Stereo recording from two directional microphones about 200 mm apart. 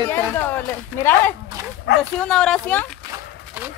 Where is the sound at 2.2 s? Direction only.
5° left (ahead or behind).